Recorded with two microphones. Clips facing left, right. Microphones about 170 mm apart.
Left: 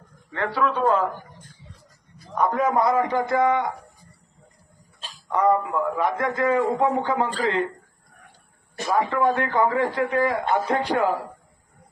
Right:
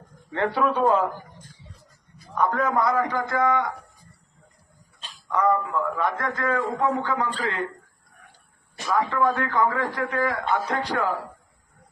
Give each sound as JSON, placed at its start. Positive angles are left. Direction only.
{"t": 0.3, "sound": "a man's voice", "side_deg": -20}
{"t": 2.5, "sound": "a man's voice", "side_deg": 20}
{"t": 5.3, "sound": "a man's voice", "side_deg": 20}
{"t": 9.0, "sound": "a man's voice", "side_deg": 20}